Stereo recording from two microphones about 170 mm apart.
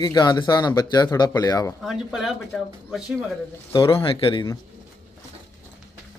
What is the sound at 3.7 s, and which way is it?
Speech, 30° left (ahead or behind).